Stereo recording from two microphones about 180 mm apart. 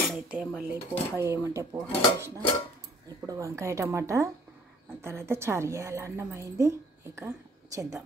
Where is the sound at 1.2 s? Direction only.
15° right (ahead or behind).